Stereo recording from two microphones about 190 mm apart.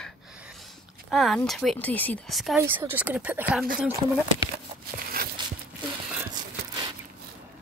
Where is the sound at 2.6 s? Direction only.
10° right (ahead or behind).